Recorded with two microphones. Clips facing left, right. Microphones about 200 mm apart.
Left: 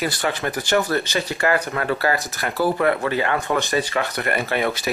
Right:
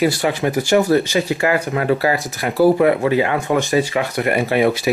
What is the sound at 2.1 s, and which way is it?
Speech, centre (ahead or behind).